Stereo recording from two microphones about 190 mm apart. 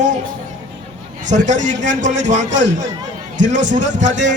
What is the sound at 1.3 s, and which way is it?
A man's voice, 40° right (ahead or behind).